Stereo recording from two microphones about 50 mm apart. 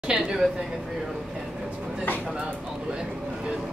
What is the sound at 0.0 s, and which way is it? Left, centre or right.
Speech, centre.